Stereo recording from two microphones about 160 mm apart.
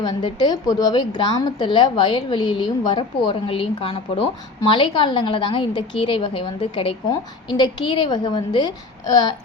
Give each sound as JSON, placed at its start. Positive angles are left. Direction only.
{"t": 0.0, "sound": "a woman's voice", "side_deg": 30}